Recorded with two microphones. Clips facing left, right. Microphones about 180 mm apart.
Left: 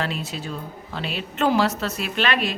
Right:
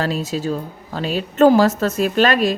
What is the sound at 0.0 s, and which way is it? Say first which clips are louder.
A woman's voice: right 7 dB; 40° right (ahead or behind).